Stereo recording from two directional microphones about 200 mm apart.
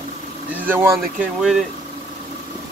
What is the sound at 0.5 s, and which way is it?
Speech, 10° right (ahead or behind).